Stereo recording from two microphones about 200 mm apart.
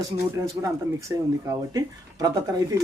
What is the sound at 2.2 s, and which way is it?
Speech, 20° right (ahead or behind).